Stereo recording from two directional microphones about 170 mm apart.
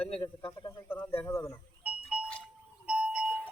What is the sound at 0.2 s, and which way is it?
Speech, 30° left (ahead or behind).